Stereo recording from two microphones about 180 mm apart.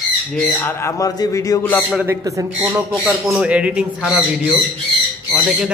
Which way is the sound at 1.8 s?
5° right (ahead or behind).